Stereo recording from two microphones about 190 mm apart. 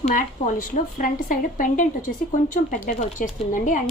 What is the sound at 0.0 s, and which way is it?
A woman's voice, 40° left (ahead or behind).